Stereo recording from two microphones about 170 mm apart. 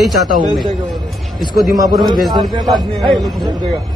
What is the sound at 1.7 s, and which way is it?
Speech, 20° right (ahead or behind).